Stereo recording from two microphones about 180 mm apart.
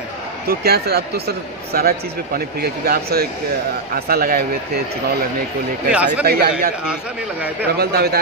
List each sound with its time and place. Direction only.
0.5 s speech: 65° right (ahead or behind)
5.9 s speech: 10° right (ahead or behind)
6.2 s speech: 60° right (ahead or behind)
7.8 s speech: 60° right (ahead or behind)